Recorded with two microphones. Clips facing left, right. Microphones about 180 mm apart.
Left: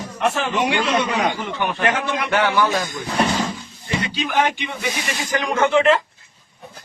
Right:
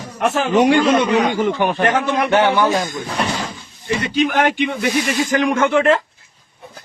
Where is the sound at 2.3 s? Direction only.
25° right (ahead or behind).